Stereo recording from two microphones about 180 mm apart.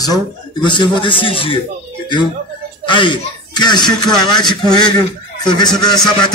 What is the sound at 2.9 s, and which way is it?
Speech, 25° left (ahead or behind).